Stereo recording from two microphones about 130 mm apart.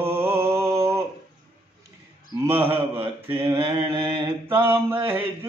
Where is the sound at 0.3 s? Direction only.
20° right (ahead or behind).